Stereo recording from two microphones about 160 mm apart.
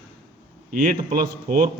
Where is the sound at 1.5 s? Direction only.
55° right (ahead or behind).